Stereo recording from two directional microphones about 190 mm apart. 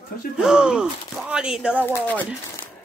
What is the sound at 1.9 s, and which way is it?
Speech, 10° left (ahead or behind).